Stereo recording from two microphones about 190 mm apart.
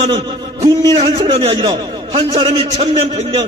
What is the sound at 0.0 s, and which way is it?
A man's voice, 30° right (ahead or behind).